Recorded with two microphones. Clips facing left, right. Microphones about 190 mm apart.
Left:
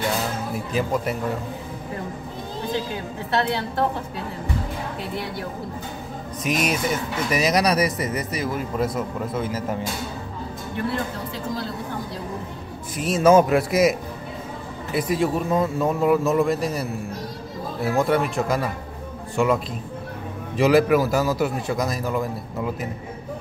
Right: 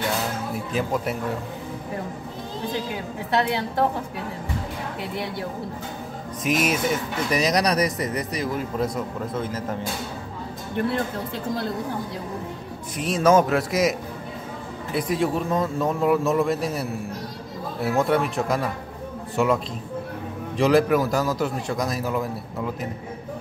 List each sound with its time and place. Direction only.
0.7 s speech: centre (ahead or behind)
3.3 s a woman's voice: 15° right (ahead or behind)
6.4 s speech: centre (ahead or behind)
12.9 s a man's voice: 5° left (ahead or behind)
15.0 s speech: 5° left (ahead or behind)